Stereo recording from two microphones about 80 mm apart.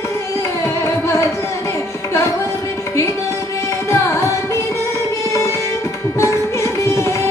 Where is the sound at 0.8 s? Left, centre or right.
Left.